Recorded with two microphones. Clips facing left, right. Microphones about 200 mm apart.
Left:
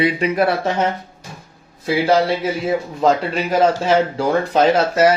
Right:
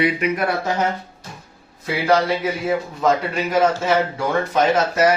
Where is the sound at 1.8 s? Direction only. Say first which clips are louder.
Left 2 dB; 25° left (ahead or behind).